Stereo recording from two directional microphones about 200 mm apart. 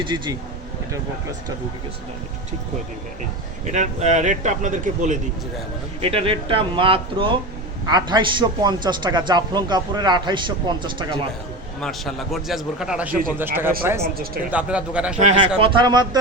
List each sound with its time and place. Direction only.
0.0 s a man's voice: 20° right (ahead or behind)
3.7 s a man's voice: 35° right (ahead or behind)
11.8 s a man's voice: centre (ahead or behind)
15.2 s a man's voice: 30° right (ahead or behind)